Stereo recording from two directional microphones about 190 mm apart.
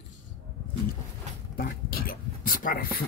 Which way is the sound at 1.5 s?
50° left (ahead or behind).